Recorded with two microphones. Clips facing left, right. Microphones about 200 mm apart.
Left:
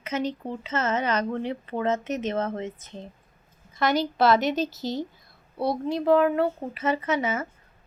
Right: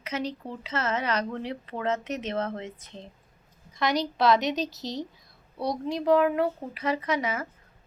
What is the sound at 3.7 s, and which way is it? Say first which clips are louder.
A woman's voice: left 3 dB; centre (ahead or behind).